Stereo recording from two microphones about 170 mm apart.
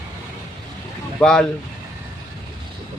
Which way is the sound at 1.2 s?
5° left (ahead or behind).